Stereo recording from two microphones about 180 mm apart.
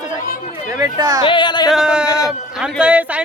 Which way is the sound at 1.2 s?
25° left (ahead or behind).